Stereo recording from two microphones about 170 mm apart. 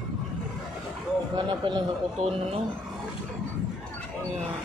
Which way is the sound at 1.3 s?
25° right (ahead or behind).